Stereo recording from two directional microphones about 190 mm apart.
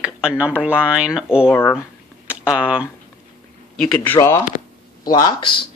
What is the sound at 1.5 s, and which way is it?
Speech, 10° left (ahead or behind).